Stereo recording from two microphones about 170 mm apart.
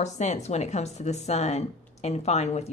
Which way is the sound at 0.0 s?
40° left (ahead or behind).